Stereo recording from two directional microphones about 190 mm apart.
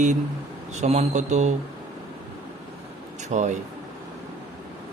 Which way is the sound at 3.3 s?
40° right (ahead or behind).